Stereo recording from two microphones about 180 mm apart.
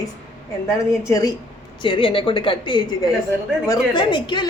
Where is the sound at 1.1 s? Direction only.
20° left (ahead or behind).